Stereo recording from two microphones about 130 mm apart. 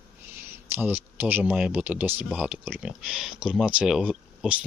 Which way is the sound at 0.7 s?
15° right (ahead or behind).